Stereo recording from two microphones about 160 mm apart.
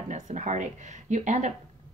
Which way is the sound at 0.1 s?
50° right (ahead or behind).